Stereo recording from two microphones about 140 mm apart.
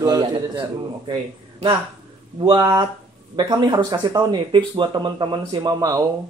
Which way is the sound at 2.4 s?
30° right (ahead or behind).